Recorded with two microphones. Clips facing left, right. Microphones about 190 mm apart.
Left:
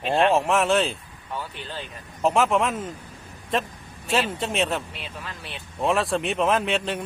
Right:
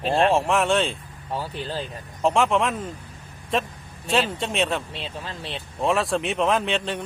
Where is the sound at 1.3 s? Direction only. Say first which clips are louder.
Right 4 dB; 35° right (ahead or behind).